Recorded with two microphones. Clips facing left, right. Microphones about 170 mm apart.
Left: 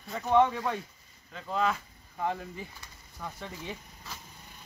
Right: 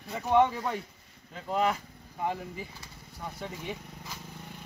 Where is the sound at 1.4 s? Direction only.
20° right (ahead or behind).